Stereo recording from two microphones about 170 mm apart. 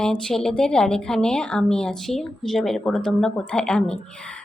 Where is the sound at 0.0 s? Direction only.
5° left (ahead or behind).